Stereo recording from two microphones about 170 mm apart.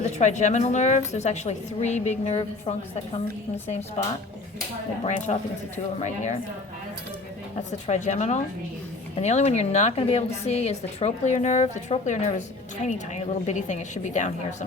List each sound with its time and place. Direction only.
0.0 s a woman's voice: 45° left (ahead or behind)
7.5 s a woman's voice: 40° left (ahead or behind)